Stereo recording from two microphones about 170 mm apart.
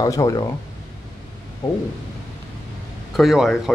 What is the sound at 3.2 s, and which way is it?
Speech, centre (ahead or behind).